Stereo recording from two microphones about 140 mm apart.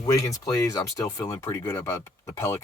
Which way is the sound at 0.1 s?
25° left (ahead or behind).